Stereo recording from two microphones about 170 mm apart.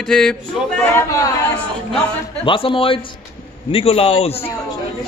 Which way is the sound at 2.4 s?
30° left (ahead or behind).